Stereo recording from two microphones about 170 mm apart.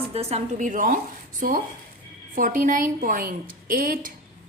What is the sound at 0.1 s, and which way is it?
A woman's voice, 40° right (ahead or behind).